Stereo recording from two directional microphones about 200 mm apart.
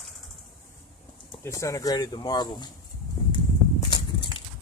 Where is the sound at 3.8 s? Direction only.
25° left (ahead or behind).